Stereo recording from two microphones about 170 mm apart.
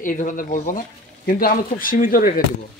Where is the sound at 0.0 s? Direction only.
50° left (ahead or behind).